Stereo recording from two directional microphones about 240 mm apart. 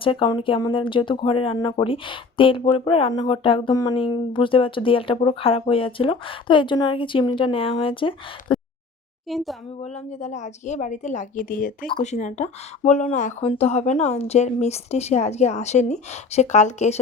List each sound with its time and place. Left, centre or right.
0.0 s speech: left
9.2 s a child's voice: centre
9.8 s a woman's voice: left
11.9 s speech: left